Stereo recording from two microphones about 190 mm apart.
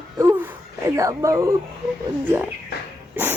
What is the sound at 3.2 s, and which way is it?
Speech, 10° right (ahead or behind).